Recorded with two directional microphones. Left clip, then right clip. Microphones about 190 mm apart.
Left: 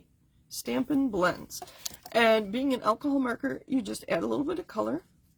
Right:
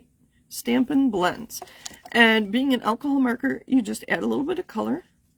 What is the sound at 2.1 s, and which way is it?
Speech, 50° right (ahead or behind).